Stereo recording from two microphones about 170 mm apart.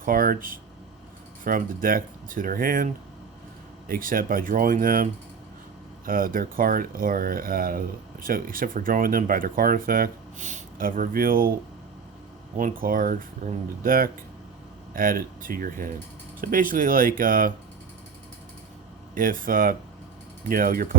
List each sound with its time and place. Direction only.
0.0 s speech: 55° right (ahead or behind)
6.1 s speech: 55° right (ahead or behind)
12.5 s speech: 55° right (ahead or behind)
19.1 s speech: 55° right (ahead or behind)